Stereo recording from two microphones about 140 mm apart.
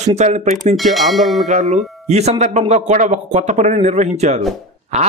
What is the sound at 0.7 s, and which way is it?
Speech, centre (ahead or behind).